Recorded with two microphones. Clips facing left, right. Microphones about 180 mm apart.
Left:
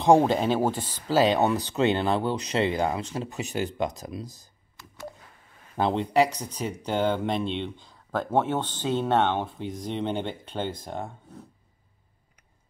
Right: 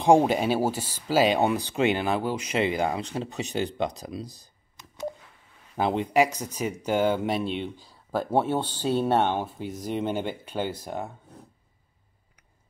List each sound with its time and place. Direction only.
0.3 s speech: 10° right (ahead or behind)
4.7 s telephone dialing: 20° right (ahead or behind)
5.2 s telephone dialing: 50° left (ahead or behind)
5.8 s speech: 10° right (ahead or behind)